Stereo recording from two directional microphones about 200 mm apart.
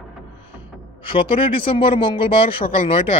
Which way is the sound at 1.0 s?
25° left (ahead or behind).